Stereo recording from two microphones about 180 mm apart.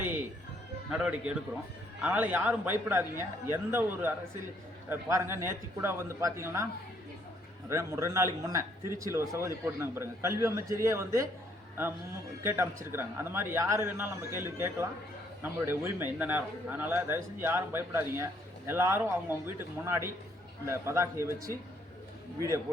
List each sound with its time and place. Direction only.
0.9 s a man's voice: 5° right (ahead or behind)
7.7 s a man's voice: 15° right (ahead or behind)
12.4 s a man's voice: 15° right (ahead or behind)